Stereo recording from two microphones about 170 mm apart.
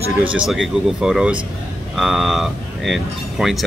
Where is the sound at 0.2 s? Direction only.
5° right (ahead or behind).